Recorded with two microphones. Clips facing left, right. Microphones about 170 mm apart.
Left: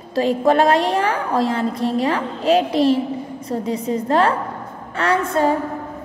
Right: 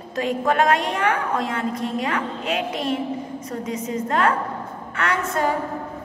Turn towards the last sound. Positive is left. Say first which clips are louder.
# left 5 dB
turn(degrees=30)  # may be behind; listen again after turning